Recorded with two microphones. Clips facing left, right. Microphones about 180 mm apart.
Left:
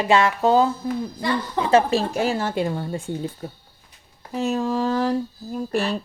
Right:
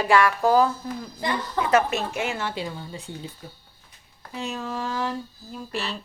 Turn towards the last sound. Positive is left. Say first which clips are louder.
# left 8 dB
turn(degrees=50)  # may be behind; listen again after turning